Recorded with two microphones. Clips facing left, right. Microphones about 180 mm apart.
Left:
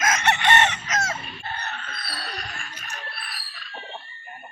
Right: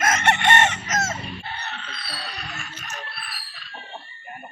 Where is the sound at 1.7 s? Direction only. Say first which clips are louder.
Even; 50° left (ahead or behind).